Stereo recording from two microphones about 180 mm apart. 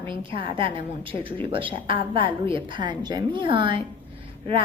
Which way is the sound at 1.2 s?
30° right (ahead or behind).